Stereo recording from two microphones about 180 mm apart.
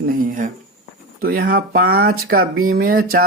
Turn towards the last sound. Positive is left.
turn(degrees=-55)  # may be behind; listen again after turning